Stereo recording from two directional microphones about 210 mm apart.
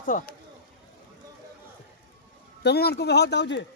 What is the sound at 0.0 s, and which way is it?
Speech, 40° left (ahead or behind).